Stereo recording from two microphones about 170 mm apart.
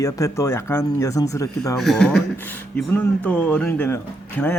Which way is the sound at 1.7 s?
Centre (ahead or behind).